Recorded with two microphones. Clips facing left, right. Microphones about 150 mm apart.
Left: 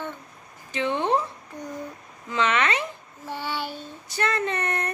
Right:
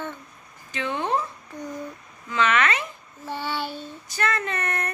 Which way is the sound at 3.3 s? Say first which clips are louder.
Right 1 dB; 15° left (ahead or behind).